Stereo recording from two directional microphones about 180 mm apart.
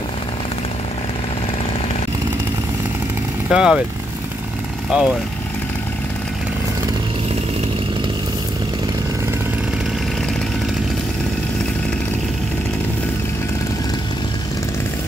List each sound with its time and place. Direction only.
3.5 s speech: 5° right (ahead or behind)
4.9 s speech: 5° right (ahead or behind)